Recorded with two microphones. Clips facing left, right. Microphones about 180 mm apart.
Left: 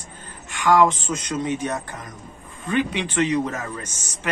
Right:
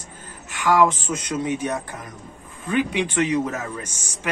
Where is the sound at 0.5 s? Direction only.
10° right (ahead or behind).